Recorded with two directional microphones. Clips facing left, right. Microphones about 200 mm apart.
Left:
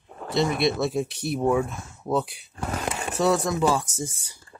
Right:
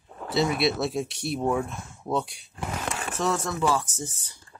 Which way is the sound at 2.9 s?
15° left (ahead or behind).